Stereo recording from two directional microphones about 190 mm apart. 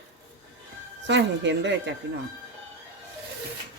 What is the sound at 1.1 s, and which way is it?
Speech, 70° right (ahead or behind).